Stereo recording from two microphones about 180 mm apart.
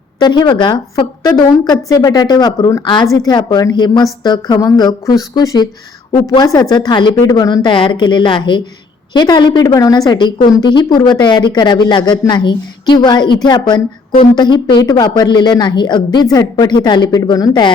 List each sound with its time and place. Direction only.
0.2 s a woman's voice: 25° left (ahead or behind)